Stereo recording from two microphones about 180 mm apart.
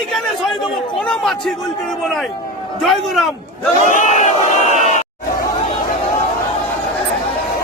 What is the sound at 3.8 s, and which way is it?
Crowd, 45° left (ahead or behind).